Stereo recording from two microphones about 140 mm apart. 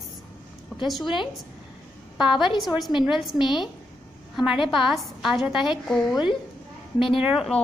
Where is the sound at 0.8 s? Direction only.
Centre (ahead or behind).